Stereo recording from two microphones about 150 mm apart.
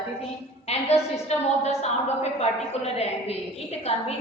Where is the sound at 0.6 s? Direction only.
45° left (ahead or behind).